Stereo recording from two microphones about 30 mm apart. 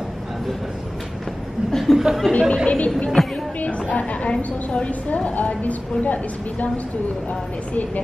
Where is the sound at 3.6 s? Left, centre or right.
Left.